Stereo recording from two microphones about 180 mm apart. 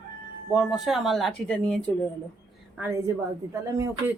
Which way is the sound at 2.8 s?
15° right (ahead or behind).